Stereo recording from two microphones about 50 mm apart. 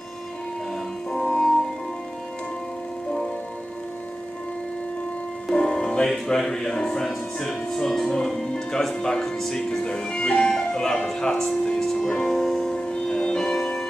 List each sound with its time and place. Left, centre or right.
1.1 s music: centre
5.5 s music: centre
6.2 s speech: centre